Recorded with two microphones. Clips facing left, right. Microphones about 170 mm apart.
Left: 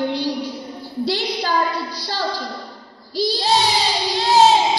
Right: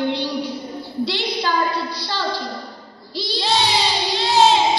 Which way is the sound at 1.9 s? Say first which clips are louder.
Even; 45° left (ahead or behind).